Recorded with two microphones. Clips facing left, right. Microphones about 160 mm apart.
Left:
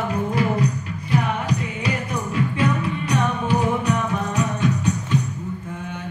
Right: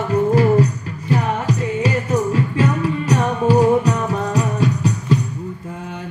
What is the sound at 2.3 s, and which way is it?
Music, 35° right (ahead or behind).